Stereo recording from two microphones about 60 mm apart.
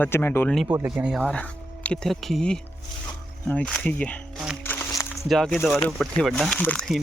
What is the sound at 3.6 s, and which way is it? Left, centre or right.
Speech, centre.